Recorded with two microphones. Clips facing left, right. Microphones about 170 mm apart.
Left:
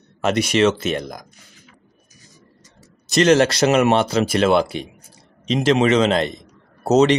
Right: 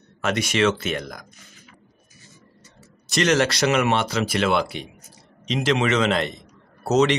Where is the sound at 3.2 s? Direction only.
35° left (ahead or behind).